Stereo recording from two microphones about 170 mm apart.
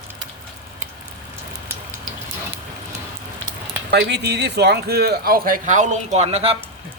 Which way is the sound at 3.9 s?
75° right (ahead or behind).